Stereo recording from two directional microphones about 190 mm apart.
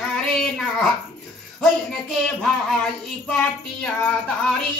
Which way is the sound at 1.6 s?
5° left (ahead or behind).